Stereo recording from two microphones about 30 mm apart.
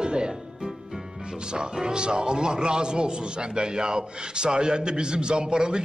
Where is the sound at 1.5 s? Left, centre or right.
Right.